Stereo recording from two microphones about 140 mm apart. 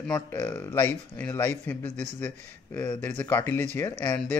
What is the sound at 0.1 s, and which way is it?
A man's voice, 15° left (ahead or behind).